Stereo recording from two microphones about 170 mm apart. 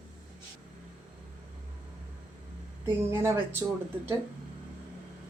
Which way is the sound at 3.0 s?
15° right (ahead or behind).